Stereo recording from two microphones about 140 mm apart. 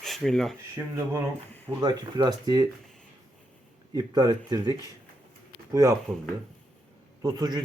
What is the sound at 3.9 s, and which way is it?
Speech, 30° right (ahead or behind).